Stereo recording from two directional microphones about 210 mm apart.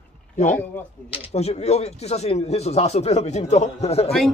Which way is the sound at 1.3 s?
30° left (ahead or behind).